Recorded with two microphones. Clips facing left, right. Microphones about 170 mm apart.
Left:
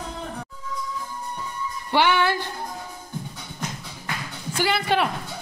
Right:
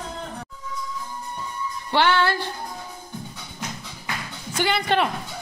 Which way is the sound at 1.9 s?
15° left (ahead or behind).